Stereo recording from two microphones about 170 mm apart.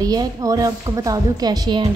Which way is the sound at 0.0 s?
20° right (ahead or behind).